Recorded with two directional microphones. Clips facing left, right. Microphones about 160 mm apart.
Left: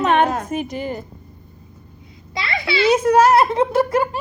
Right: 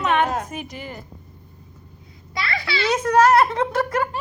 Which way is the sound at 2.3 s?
20° left (ahead or behind).